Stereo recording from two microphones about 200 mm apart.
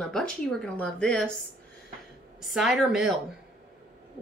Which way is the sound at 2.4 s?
Centre (ahead or behind).